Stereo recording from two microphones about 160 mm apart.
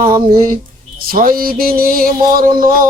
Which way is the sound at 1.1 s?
60° right (ahead or behind).